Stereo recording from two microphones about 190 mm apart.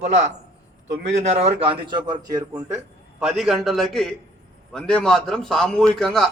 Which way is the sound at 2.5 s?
15° right (ahead or behind).